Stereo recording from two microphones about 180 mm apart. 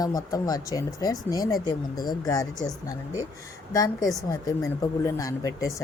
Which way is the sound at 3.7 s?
20° left (ahead or behind).